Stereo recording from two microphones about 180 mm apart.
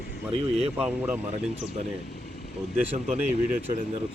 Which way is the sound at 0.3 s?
30° right (ahead or behind).